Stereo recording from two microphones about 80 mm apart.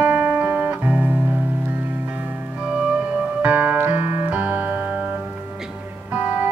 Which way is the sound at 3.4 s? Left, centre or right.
Right.